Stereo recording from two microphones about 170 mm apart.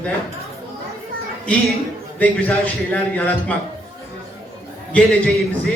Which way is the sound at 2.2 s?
10° left (ahead or behind).